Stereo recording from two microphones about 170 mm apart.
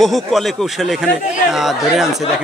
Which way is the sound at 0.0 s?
Centre (ahead or behind).